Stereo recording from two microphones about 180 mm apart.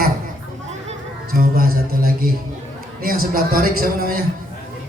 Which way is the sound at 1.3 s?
55° right (ahead or behind).